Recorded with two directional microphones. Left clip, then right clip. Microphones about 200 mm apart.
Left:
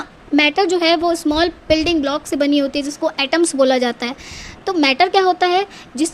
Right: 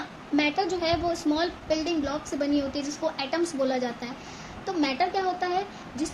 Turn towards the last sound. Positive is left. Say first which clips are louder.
# left 11 dB
turn(degrees=50)  # may be behind; listen again after turning